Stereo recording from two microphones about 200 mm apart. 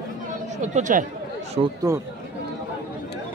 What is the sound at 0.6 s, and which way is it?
Speech, 35° right (ahead or behind).